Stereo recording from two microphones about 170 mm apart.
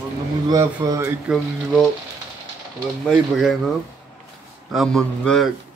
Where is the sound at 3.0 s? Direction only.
Centre (ahead or behind).